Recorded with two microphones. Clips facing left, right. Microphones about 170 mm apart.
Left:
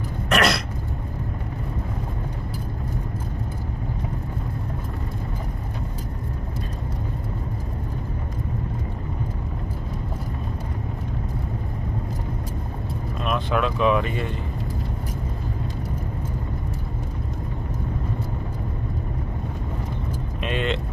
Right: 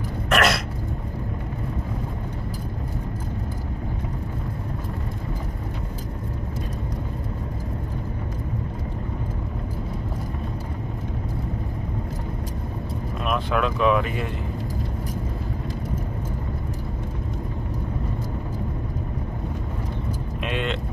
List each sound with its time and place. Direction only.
0.3 s a sound: centre (ahead or behind)
13.2 s vehicle: centre (ahead or behind)
20.4 s vehicle: centre (ahead or behind)